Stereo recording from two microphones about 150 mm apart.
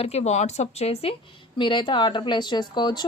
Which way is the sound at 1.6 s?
35° left (ahead or behind).